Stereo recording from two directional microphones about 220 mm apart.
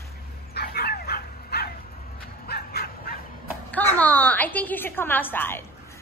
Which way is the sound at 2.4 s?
45° left (ahead or behind).